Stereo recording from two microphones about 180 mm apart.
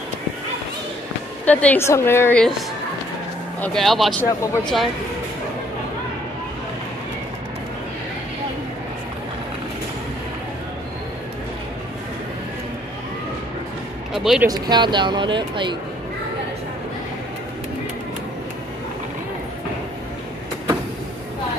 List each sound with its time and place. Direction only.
1.4 s a woman's voice: 10° left (ahead or behind)
3.6 s speech: centre (ahead or behind)
14.1 s speech: centre (ahead or behind)
14.5 s speech: 25° right (ahead or behind)